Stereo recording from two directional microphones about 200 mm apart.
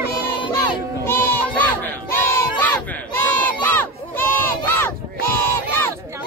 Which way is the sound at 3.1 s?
10° left (ahead or behind).